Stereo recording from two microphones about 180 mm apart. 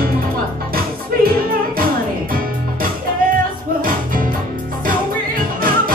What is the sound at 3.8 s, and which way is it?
Music, 50° right (ahead or behind).